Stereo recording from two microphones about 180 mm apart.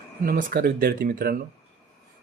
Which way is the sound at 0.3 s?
55° right (ahead or behind).